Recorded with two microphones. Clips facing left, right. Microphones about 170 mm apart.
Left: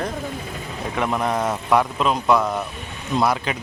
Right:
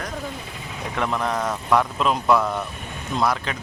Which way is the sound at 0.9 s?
10° left (ahead or behind).